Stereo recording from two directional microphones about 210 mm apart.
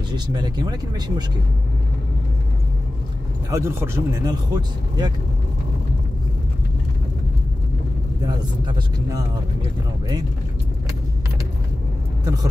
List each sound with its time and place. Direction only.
0.1 s speech: 20° right (ahead or behind)
3.4 s a man's voice: 15° right (ahead or behind)
8.2 s speech: 20° right (ahead or behind)